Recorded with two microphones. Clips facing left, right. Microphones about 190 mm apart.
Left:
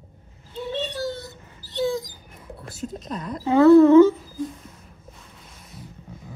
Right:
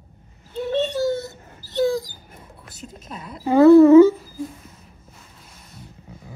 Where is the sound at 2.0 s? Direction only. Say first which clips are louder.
Right 3 dB; 30° right (ahead or behind).